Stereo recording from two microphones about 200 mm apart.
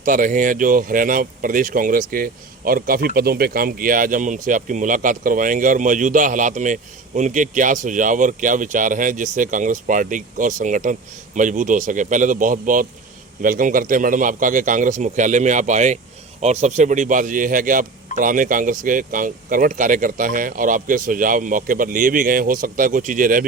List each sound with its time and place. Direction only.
0.0 s speech: 40° right (ahead or behind)